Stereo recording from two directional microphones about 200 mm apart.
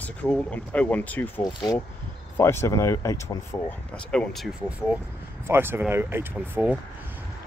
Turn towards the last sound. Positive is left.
turn(degrees=-10)  # may be behind; listen again after turning